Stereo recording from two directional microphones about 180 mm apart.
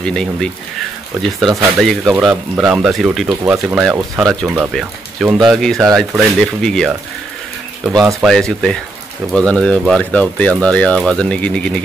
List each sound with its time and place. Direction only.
0.0 s speech: 5° left (ahead or behind)
7.9 s speech: 15° right (ahead or behind)
8.2 s speech: centre (ahead or behind)